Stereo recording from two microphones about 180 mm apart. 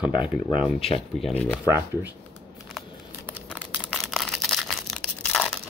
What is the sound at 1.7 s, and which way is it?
Speech, 10° right (ahead or behind).